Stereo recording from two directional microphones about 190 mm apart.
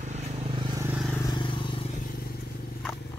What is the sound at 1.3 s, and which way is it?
Vehicle, 25° left (ahead or behind).